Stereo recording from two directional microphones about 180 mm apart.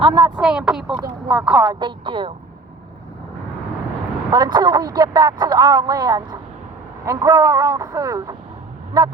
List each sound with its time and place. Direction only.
0.0 s speech: 25° right (ahead or behind)
0.4 s speech: 5° right (ahead or behind)
1.6 s speech: 25° right (ahead or behind)
4.3 s speech: 25° right (ahead or behind)